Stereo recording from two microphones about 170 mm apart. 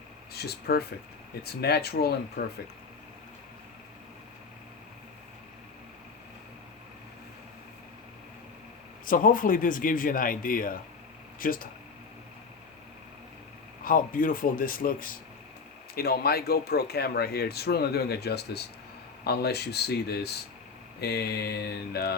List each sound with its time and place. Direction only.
0.3 s speech: 70° left (ahead or behind)
9.0 s speech: 55° left (ahead or behind)
13.8 s speech: 55° left (ahead or behind); by 22.1 s 70° left (ahead or behind)